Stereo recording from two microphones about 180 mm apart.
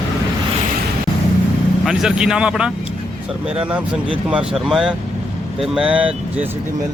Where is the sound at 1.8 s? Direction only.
Centre (ahead or behind).